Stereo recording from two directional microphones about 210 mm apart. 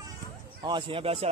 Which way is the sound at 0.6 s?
20° right (ahead or behind).